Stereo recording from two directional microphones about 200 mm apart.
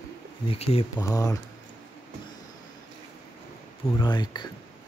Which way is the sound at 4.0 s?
20° left (ahead or behind).